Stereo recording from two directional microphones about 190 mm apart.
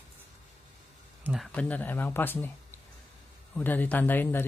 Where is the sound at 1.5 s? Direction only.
5° left (ahead or behind).